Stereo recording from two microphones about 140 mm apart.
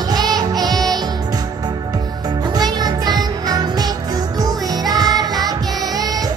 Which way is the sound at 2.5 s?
30° right (ahead or behind).